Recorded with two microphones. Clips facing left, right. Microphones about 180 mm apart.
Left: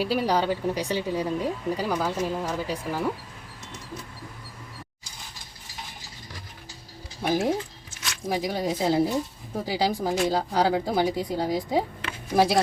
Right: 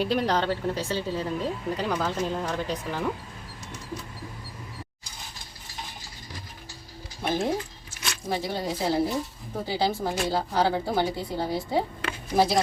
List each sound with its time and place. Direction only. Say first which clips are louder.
0.0 s a woman's voice: left 1 dB; 5° left (ahead or behind)
7.2 s a woman's voice: left 2 dB; 10° left (ahead or behind)